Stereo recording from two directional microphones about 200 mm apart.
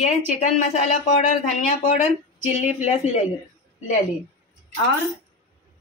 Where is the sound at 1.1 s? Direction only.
35° left (ahead or behind).